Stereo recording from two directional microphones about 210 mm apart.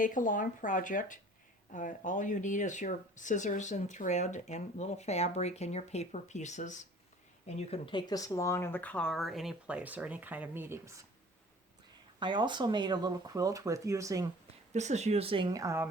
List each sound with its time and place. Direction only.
0.0 s speech: 40° left (ahead or behind); by 11.0 s 10° right (ahead or behind)
12.2 s speech: 20° right (ahead or behind)
14.7 s speech: 35° right (ahead or behind); by 15.9 s 15° right (ahead or behind)